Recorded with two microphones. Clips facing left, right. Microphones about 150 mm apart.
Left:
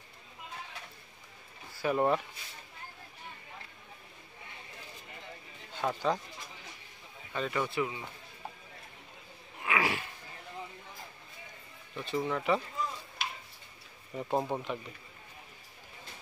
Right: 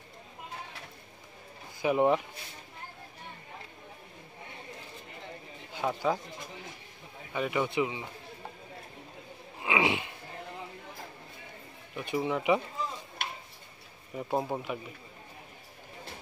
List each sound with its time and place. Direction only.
1.8 s speech: 15° right (ahead or behind)
5.7 s speech: 10° right (ahead or behind)
7.3 s speech: 15° right (ahead or behind)
9.6 s a sound: 20° right (ahead or behind)
11.9 s speech: 10° right (ahead or behind)
13.2 s tick-tock: 55° right (ahead or behind)
14.1 s speech: 5° right (ahead or behind)